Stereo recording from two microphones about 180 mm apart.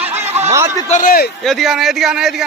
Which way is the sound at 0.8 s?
45° left (ahead or behind).